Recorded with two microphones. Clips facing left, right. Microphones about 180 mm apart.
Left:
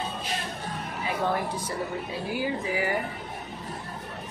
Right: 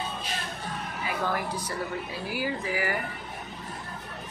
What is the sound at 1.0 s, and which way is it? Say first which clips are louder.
Music: left 3 dB; 25° left (ahead or behind).